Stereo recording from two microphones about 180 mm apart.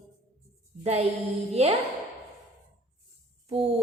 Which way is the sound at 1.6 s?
35° right (ahead or behind).